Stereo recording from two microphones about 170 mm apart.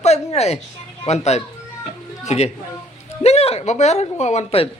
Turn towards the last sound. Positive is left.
turn(degrees=40)  # may be behind; listen again after turning